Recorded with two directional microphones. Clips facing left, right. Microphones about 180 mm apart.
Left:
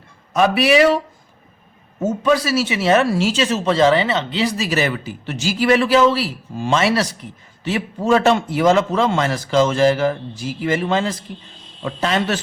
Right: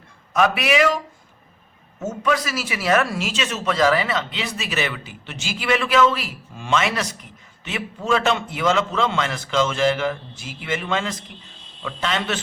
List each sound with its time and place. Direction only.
0.3 s speech: 30° left (ahead or behind)